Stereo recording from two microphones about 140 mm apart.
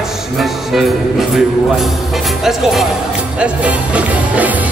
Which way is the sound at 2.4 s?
Centre (ahead or behind).